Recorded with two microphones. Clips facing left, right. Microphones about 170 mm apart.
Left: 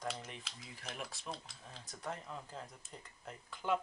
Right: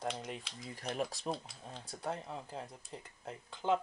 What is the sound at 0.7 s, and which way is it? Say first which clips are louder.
Speech: right 10 dB; 40° right (ahead or behind).